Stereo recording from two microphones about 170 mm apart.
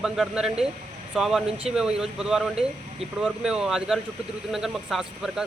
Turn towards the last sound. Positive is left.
turn(degrees=0)  # may be behind; listen again after turning